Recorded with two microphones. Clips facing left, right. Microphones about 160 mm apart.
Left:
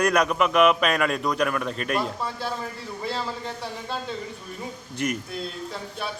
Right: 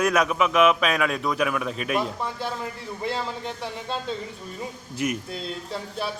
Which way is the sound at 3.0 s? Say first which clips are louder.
Right 1 dB; 20° right (ahead or behind).